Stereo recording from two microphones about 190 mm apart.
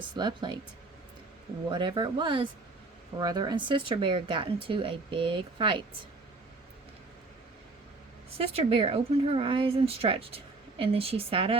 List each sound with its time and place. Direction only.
0.2 s a woman's voice: 25° right (ahead or behind)
1.7 s a woman's voice: 25° right (ahead or behind)
8.4 s a woman's voice: 30° right (ahead or behind)